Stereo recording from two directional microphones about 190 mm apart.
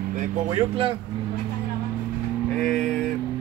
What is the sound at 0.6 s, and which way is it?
Speech, 25° right (ahead or behind).